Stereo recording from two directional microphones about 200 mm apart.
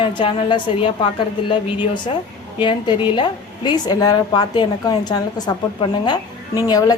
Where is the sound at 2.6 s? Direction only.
25° left (ahead or behind).